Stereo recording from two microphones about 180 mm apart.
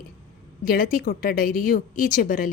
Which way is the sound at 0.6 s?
55° left (ahead or behind).